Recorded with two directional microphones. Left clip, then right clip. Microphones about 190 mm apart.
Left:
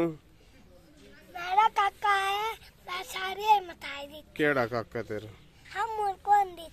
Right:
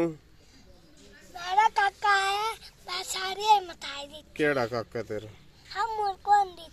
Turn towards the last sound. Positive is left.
turn(degrees=10)  # may be behind; listen again after turning